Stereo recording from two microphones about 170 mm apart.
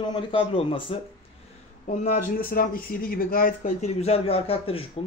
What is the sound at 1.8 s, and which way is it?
A man's voice, 45° left (ahead or behind).